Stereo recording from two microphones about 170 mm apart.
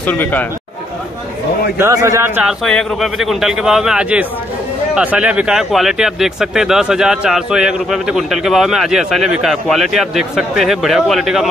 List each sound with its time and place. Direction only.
0.0 s a man's voice: 10° left (ahead or behind)
1.8 s a man's voice: 20° right (ahead or behind)
2.6 s speech: centre (ahead or behind)